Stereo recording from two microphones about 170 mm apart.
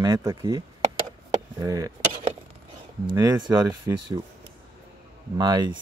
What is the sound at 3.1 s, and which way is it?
Speech, 25° right (ahead or behind).